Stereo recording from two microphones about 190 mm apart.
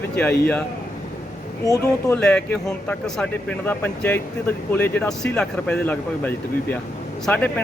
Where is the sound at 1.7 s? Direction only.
15° left (ahead or behind).